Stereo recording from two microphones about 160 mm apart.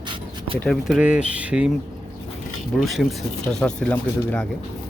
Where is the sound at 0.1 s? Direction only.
35° right (ahead or behind).